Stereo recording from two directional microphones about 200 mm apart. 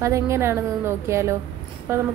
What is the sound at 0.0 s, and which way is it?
A woman's voice, 15° right (ahead or behind).